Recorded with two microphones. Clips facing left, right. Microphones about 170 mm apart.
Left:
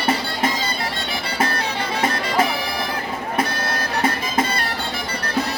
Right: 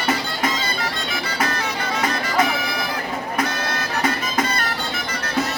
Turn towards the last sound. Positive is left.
turn(degrees=30)  # may be behind; listen again after turning